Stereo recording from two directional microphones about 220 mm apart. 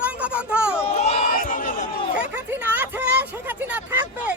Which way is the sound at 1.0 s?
35° left (ahead or behind).